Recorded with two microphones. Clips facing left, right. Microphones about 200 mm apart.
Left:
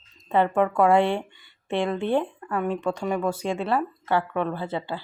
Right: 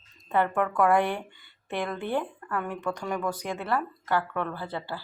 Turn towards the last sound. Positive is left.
turn(degrees=20)  # may be behind; listen again after turning